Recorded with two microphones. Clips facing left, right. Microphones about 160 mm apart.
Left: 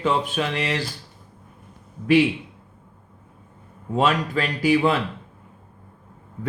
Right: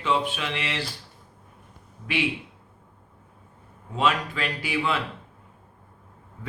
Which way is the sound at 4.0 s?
40° left (ahead or behind).